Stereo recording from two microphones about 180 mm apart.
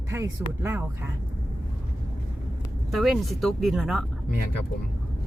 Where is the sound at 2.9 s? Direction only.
Centre (ahead or behind).